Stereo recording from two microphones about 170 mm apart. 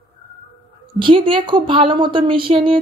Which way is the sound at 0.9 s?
30° right (ahead or behind).